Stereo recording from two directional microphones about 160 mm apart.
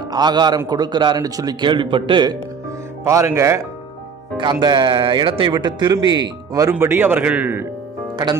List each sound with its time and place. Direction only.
0.1 s speech: 25° right (ahead or behind)
3.0 s a man's voice: 20° right (ahead or behind)
4.4 s speech: 30° right (ahead or behind)
6.7 s a man's voice: 15° right (ahead or behind)